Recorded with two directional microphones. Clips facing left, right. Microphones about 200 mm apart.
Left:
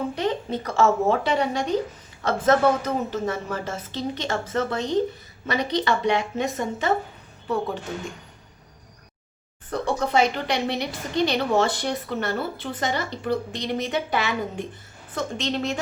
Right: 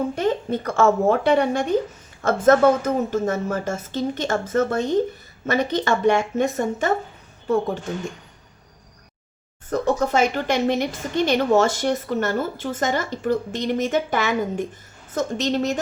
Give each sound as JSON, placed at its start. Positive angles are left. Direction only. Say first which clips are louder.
{"t": 0.2, "sound": "speech", "louder": "right 3 dB", "side_deg": -50}
{"t": 9.6, "sound": "a woman's voice", "louder": "right 4 dB", "side_deg": -45}